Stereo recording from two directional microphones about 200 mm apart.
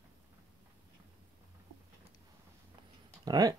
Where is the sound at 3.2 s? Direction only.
20° right (ahead or behind).